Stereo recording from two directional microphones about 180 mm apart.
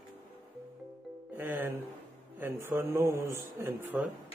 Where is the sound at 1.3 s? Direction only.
10° right (ahead or behind).